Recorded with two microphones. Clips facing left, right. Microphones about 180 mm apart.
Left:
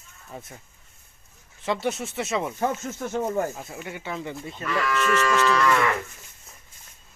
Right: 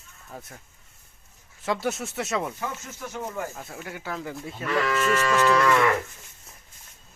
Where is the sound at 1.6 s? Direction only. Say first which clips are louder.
Left 1 dB; centre (ahead or behind).